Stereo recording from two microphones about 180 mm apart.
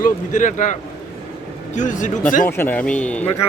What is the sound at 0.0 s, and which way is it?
Speech, 45° left (ahead or behind).